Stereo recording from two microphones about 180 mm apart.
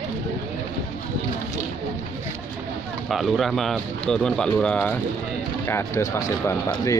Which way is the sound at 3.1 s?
Centre (ahead or behind).